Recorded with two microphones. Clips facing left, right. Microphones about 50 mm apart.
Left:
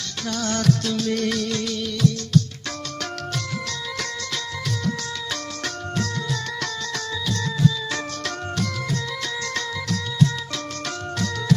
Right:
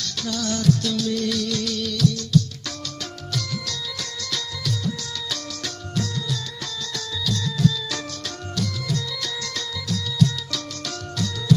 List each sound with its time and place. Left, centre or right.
0.3 s music: left